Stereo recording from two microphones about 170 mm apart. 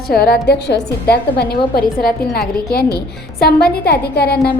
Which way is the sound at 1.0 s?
70° left (ahead or behind).